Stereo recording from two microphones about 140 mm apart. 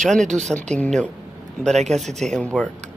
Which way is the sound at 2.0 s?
55° right (ahead or behind).